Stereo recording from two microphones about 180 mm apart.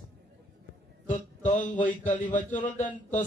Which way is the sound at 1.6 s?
10° left (ahead or behind).